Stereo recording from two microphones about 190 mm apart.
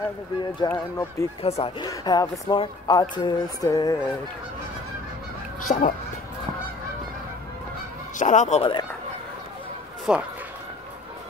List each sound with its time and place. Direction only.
0.4 s speech: 20° left (ahead or behind)
1.4 s speech: 30° left (ahead or behind)
1.9 s speech: 20° left (ahead or behind)
5.6 s goose: 45° left (ahead or behind)
8.2 s speech: 40° left (ahead or behind)
10.1 s speech: 5° right (ahead or behind)